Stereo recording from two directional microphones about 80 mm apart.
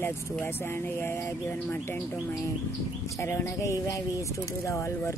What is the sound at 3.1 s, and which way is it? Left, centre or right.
Speech, left.